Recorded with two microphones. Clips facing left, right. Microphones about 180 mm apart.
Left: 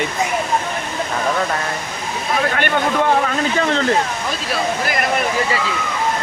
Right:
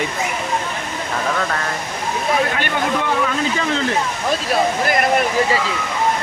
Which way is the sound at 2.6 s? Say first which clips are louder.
Left 3 dB; 50° left (ahead or behind).